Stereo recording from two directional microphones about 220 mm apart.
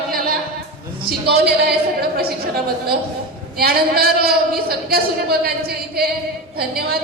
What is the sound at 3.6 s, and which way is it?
A woman's voice, 45° right (ahead or behind).